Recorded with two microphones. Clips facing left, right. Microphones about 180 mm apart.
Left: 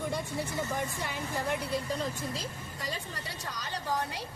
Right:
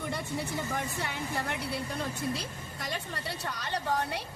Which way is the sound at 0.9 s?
70° right (ahead or behind).